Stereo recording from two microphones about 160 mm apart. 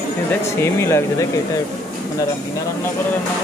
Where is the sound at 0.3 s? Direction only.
15° left (ahead or behind).